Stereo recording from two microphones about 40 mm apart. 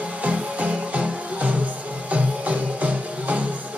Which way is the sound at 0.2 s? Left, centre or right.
Right.